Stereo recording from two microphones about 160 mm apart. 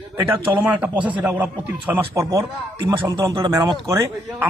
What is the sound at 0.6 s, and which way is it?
A man's voice, 10° right (ahead or behind).